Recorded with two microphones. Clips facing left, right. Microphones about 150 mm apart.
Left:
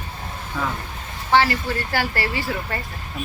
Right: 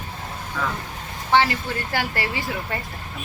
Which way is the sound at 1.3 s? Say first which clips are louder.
Left 1 dB; 20° right (ahead or behind).